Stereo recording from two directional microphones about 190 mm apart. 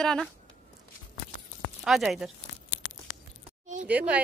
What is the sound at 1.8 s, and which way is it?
Speech, centre (ahead or behind).